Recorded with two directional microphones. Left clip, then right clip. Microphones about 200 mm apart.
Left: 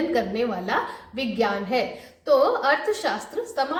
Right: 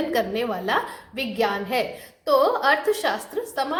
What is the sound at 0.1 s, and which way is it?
A woman's voice, 40° right (ahead or behind).